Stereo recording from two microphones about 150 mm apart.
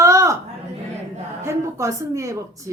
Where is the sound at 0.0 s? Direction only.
20° right (ahead or behind).